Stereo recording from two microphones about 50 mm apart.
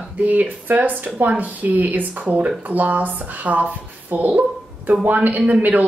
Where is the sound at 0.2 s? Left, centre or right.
Right.